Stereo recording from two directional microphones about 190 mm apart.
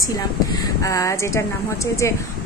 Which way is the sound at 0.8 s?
15° left (ahead or behind).